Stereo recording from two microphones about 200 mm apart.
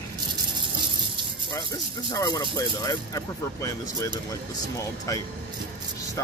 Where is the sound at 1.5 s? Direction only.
20° left (ahead or behind).